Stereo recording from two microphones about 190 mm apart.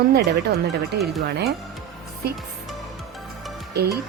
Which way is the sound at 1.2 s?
60° right (ahead or behind).